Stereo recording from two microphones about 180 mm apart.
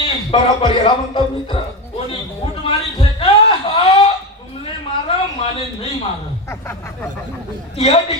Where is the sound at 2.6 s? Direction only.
30° left (ahead or behind).